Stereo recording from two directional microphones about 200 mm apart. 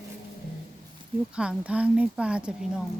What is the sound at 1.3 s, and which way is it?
A woman's voice, 5° right (ahead or behind).